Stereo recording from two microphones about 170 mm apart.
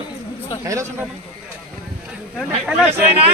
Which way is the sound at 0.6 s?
15° right (ahead or behind).